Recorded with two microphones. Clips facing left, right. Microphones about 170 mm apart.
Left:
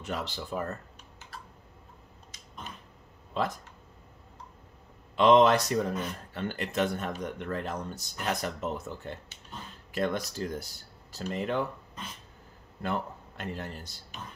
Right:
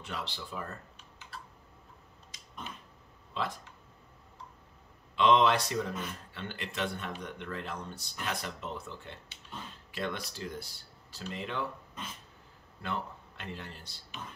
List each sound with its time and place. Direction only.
0.0 s speech: 45° left (ahead or behind)
3.4 s speech: 45° left (ahead or behind)
5.1 s speech: 45° left (ahead or behind)
12.8 s speech: 45° left (ahead or behind)